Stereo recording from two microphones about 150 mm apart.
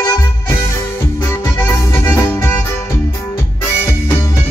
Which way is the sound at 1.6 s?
15° left (ahead or behind).